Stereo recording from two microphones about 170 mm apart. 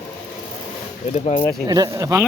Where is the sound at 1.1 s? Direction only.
40° left (ahead or behind).